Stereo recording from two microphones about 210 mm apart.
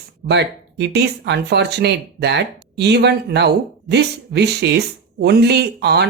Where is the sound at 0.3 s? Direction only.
55° right (ahead or behind).